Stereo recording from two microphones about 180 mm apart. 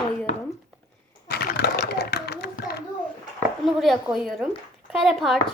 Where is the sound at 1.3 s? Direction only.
65° left (ahead or behind).